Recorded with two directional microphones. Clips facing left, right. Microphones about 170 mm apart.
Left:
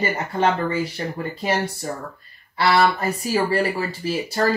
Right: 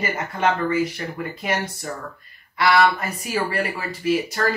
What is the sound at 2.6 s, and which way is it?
Speech, 30° left (ahead or behind).